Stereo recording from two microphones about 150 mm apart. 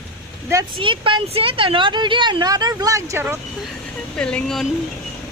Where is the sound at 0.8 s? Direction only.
35° right (ahead or behind); by 3.4 s 15° right (ahead or behind).